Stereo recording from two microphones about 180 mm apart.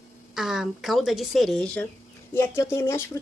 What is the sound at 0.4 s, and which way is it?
Speech, centre (ahead or behind).